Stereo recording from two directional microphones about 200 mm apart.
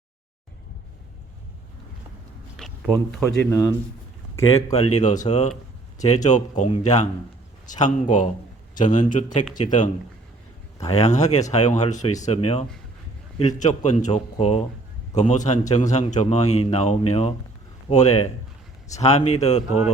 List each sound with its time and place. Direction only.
2.6 s a sound: centre (ahead or behind)
3.2 s speech: 15° left (ahead or behind)
4.4 s speech: 30° left (ahead or behind)
10.9 s speech: 35° left (ahead or behind)